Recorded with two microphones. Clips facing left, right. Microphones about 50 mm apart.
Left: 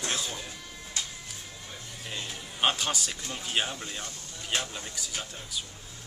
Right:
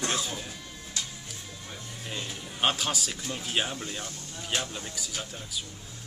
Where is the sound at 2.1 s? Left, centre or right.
Centre.